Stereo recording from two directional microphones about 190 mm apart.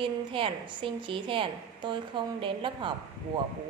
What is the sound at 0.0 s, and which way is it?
A woman's voice, 25° right (ahead or behind).